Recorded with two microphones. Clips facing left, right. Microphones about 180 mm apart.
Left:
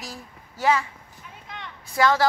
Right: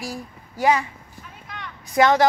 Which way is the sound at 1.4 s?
25° left (ahead or behind).